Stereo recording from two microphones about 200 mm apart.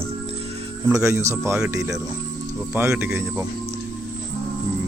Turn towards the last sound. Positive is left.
turn(degrees=-10)  # may be behind; listen again after turning